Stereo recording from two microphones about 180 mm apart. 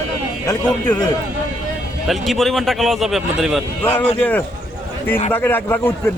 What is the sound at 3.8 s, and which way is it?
A man's voice, 10° left (ahead or behind).